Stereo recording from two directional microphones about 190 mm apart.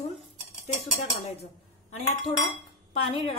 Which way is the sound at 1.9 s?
35° left (ahead or behind).